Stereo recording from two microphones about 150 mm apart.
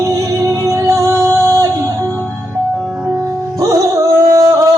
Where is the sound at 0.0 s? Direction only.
20° right (ahead or behind).